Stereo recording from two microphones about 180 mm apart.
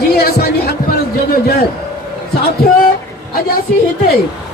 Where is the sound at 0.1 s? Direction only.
60° left (ahead or behind).